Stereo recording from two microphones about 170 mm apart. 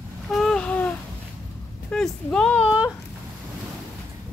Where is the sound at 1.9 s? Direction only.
5° left (ahead or behind).